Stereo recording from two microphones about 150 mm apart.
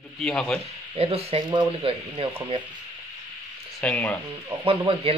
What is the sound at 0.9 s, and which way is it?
Speech, 40° right (ahead or behind).